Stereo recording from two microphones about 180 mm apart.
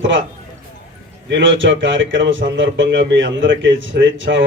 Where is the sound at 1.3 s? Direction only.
90° right.